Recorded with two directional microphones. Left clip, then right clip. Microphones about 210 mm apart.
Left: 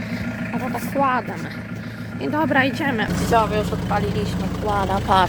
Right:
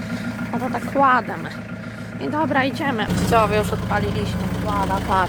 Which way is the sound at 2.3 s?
5° left (ahead or behind).